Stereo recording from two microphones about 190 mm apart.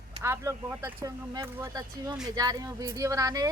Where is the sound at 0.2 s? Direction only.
15° right (ahead or behind).